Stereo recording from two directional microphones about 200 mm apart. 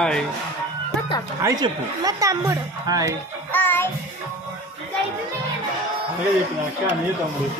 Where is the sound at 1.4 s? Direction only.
20° right (ahead or behind).